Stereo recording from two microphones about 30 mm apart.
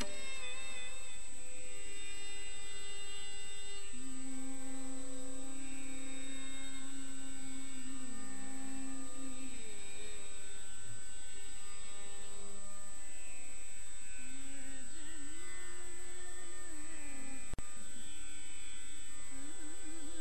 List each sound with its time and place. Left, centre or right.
0.0 s music: centre
2.0 s a sound: centre
19.4 s carnatic music: centre